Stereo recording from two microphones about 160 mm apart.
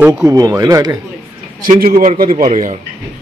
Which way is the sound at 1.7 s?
65° right (ahead or behind).